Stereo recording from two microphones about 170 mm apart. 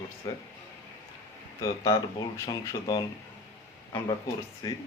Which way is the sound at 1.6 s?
20° left (ahead or behind).